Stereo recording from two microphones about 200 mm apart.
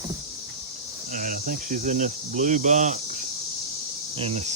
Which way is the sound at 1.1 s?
45° right (ahead or behind).